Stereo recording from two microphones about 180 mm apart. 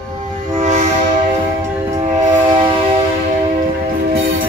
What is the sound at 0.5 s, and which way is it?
Train, 40° right (ahead or behind).